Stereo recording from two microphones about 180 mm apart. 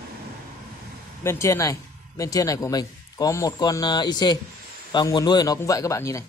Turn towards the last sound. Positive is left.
turn(degrees=15)  # may be behind; listen again after turning